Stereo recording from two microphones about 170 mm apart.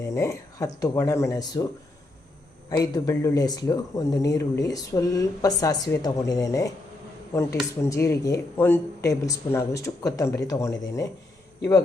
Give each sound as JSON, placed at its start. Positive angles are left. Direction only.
{"t": 0.1, "sound": "speech", "side_deg": 15}
{"t": 2.6, "sound": "speech", "side_deg": 20}